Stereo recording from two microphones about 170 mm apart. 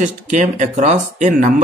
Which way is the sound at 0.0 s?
45° right (ahead or behind).